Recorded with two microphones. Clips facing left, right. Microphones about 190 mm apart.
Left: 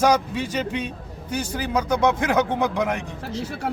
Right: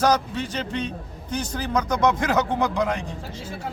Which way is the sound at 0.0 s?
10° left (ahead or behind).